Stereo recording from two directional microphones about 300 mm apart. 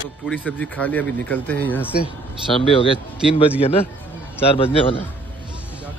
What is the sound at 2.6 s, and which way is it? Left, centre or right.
Speech, centre.